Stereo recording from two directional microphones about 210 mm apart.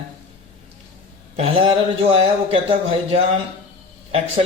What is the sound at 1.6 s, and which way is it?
Speech, 25° right (ahead or behind).